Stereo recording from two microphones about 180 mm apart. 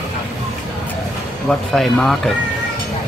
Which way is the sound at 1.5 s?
5° left (ahead or behind).